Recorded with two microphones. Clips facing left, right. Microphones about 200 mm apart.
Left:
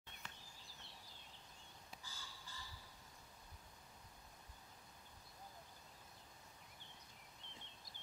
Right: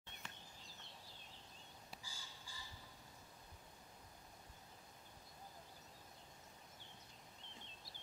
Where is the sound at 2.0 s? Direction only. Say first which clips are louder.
Even; 10° right (ahead or behind).